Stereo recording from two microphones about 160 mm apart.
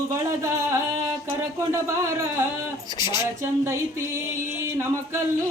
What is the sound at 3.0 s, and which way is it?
Speech, 25° left (ahead or behind).